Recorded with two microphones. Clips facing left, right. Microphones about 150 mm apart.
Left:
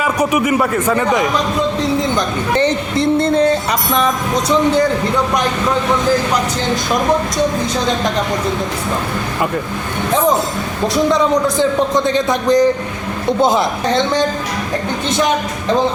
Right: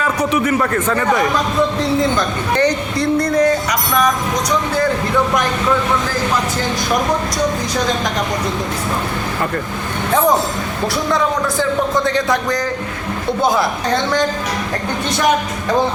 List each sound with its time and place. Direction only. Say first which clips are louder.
0.0 s a man's voice: left 2 dB; 10° left (ahead or behind)
11.1 s speech: left 3 dB; 20° left (ahead or behind)